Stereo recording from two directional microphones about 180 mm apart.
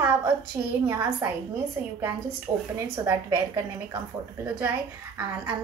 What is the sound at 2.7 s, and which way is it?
Speech, 15° right (ahead or behind).